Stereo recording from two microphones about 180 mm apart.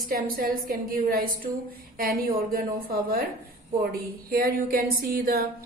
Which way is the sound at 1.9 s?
55° right (ahead or behind).